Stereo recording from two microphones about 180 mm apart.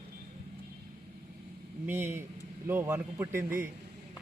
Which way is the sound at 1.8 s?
10° right (ahead or behind).